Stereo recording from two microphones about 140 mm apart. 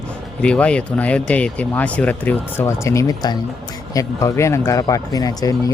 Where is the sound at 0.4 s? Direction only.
10° left (ahead or behind).